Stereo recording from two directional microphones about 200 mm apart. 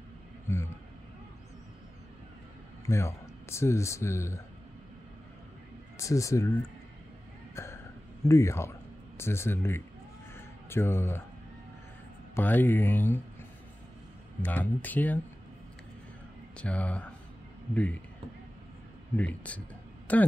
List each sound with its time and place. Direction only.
0.5 s a sound: 15° left (ahead or behind)
2.9 s speech: 15° left (ahead or behind)
5.9 s speech: 15° left (ahead or behind)
7.5 s throat clearing: 15° left (ahead or behind)
8.3 s speech: 15° left (ahead or behind)
10.3 s music: 10° left (ahead or behind)
12.4 s speech: 10° left (ahead or behind)
14.4 s speech: 10° left (ahead or behind)
16.5 s speech: 5° left (ahead or behind)
19.1 s speech: 5° left (ahead or behind)